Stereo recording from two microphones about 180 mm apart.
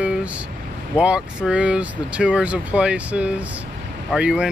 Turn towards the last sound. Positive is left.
turn(degrees=-5)  # may be behind; listen again after turning